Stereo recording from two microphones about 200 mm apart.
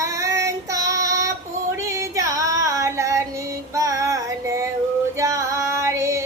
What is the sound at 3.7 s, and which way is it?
Child singing, 15° right (ahead or behind).